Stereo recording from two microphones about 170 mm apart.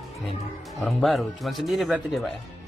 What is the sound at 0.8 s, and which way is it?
Speech, centre (ahead or behind).